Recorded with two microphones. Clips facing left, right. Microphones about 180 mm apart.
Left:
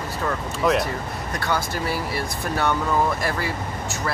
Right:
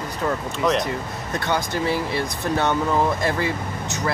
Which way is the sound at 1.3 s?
20° right (ahead or behind).